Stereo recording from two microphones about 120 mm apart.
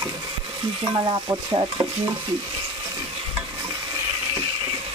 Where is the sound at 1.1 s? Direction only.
40° right (ahead or behind).